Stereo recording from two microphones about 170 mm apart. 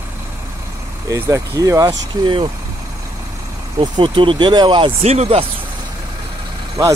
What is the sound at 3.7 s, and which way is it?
Speech, 25° right (ahead or behind).